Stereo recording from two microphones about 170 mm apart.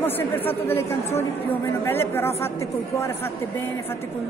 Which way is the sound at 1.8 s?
10° left (ahead or behind).